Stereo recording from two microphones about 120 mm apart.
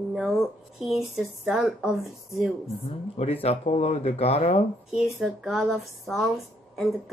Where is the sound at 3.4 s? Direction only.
60° left (ahead or behind).